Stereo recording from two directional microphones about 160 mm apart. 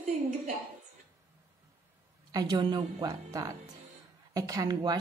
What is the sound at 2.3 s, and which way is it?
Speech, 25° right (ahead or behind).